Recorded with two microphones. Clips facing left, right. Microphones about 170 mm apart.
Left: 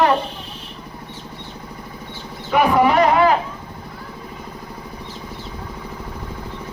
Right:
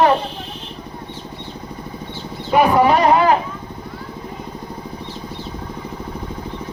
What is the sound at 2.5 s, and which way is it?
Speech, 30° right (ahead or behind).